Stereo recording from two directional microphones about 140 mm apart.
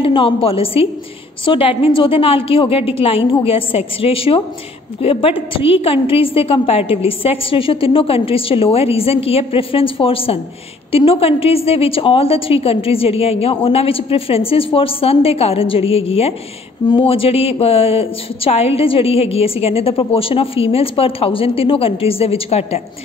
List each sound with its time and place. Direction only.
0.0 s a woman's voice: 40° left (ahead or behind)